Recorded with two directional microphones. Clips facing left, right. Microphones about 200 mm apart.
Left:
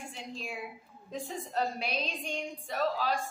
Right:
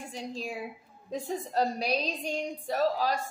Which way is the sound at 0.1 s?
40° right (ahead or behind).